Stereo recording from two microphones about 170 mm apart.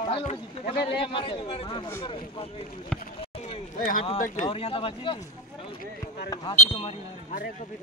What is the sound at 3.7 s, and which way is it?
Speech, 55° left (ahead or behind).